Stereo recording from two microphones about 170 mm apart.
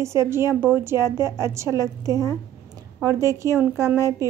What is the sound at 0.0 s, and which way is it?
A woman's voice, 15° right (ahead or behind).